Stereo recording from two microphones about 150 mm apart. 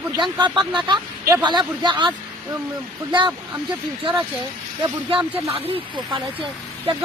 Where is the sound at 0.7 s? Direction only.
30° right (ahead or behind).